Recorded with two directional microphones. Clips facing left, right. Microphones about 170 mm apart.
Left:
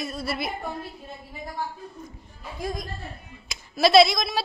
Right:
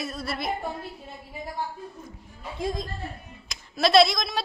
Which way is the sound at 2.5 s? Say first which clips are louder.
Right 2 dB; 25° right (ahead or behind).